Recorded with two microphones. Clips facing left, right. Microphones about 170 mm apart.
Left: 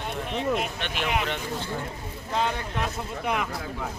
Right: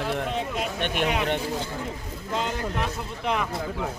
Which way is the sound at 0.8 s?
55° right (ahead or behind).